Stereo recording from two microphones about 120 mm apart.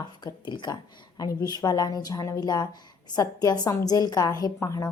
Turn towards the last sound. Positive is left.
turn(degrees=30)  # may be behind; listen again after turning